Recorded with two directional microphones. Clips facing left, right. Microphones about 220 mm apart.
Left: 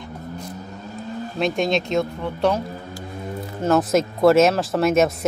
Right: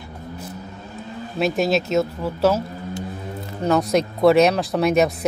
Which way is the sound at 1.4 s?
5° right (ahead or behind).